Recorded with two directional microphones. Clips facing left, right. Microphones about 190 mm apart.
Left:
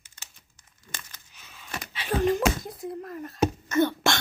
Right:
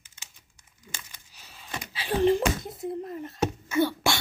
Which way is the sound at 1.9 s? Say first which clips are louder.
Right 2 dB; 30° right (ahead or behind).